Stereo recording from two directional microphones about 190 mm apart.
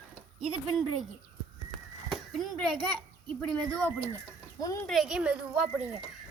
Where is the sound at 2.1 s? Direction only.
Centre (ahead or behind).